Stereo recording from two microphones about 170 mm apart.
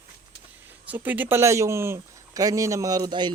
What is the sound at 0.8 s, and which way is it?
Speech, 10° right (ahead or behind).